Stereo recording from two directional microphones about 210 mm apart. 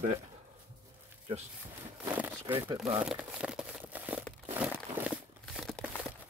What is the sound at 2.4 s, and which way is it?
Speech, 15° right (ahead or behind).